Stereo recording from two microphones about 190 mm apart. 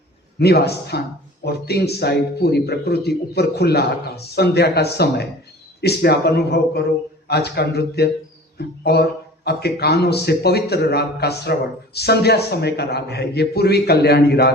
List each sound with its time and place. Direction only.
0.3 s a man's voice: 60° left (ahead or behind)